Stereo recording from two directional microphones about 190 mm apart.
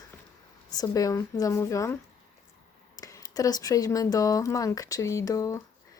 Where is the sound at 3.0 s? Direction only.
15° left (ahead or behind).